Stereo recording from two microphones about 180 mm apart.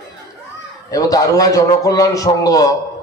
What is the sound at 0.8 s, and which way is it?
A man's voice, 20° left (ahead or behind).